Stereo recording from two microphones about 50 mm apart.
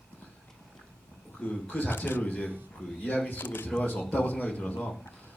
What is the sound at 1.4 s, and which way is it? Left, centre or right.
Speech, left.